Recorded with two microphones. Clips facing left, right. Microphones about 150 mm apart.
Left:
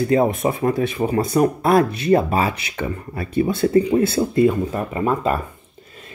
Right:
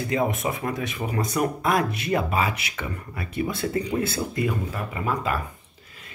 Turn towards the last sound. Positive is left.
turn(degrees=30)  # may be behind; listen again after turning